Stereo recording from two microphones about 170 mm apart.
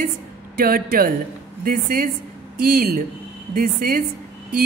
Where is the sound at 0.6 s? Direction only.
60° right (ahead or behind).